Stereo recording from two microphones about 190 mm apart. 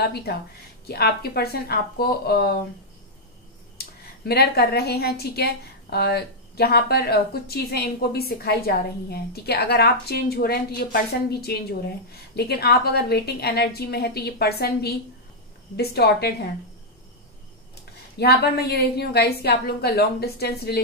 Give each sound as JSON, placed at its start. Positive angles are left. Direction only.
{"t": 0.0, "sound": "a woman's voice", "side_deg": 60}
{"t": 3.7, "sound": "a woman's voice", "side_deg": 55}
{"t": 18.2, "sound": "a woman's voice", "side_deg": 55}